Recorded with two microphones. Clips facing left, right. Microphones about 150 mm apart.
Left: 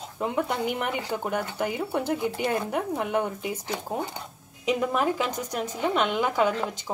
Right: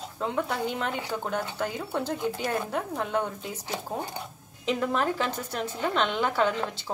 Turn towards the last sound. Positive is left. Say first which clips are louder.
# left 1 dB
turn(degrees=10)  # may be behind; listen again after turning